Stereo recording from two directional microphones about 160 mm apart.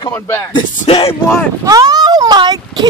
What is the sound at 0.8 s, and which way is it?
Speech, 40° left (ahead or behind).